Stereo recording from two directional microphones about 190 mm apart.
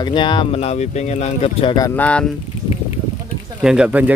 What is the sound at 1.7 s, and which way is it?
Speech, 15° left (ahead or behind).